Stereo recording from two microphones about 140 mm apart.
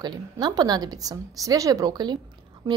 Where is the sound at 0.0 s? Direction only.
30° right (ahead or behind).